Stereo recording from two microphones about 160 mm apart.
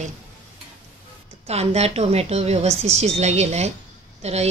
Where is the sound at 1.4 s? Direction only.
40° right (ahead or behind).